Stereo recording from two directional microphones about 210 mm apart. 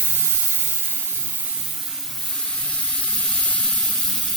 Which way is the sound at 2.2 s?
Centre (ahead or behind).